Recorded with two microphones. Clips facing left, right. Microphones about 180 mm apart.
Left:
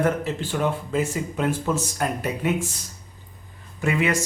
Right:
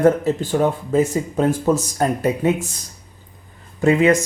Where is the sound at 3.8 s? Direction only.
35° right (ahead or behind).